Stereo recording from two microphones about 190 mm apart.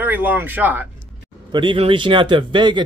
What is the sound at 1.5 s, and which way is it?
A man's voice, 25° right (ahead or behind).